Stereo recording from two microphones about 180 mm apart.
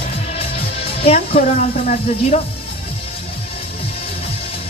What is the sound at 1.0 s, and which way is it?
Speech, 30° left (ahead or behind).